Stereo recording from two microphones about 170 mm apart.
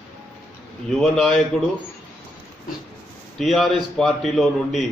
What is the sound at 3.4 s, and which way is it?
A man's voice, centre (ahead or behind).